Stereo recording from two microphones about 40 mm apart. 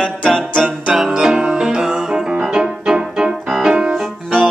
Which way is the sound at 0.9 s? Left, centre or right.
Centre.